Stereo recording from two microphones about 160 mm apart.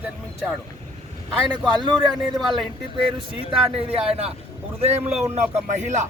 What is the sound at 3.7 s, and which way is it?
Speech, 35° right (ahead or behind).